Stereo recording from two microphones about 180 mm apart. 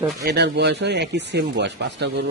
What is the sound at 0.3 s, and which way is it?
Speech, 70° right (ahead or behind).